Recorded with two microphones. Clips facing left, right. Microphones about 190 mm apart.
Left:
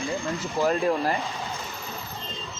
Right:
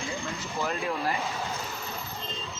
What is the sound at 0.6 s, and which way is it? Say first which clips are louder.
Speech: left 8 dB; 40° left (ahead or behind).